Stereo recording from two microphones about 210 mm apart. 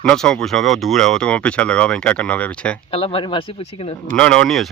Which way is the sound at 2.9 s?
25° left (ahead or behind).